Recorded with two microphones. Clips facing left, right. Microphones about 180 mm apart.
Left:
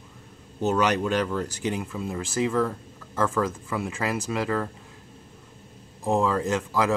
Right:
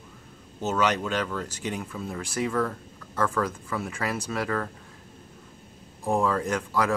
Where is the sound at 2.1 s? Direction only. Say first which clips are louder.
Left 3 dB; 10° left (ahead or behind).